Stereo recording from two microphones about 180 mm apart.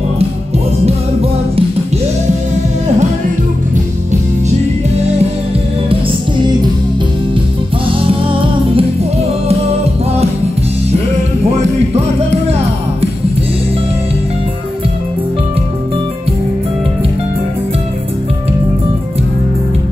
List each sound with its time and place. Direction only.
8.1 s music: 30° right (ahead or behind)
11.6 s music: 35° right (ahead or behind)